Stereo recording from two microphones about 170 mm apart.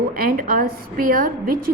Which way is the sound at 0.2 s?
55° right (ahead or behind).